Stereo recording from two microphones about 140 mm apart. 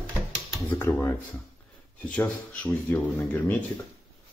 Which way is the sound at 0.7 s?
15° left (ahead or behind).